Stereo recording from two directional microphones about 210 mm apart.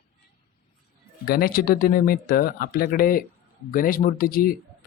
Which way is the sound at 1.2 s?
45° left (ahead or behind).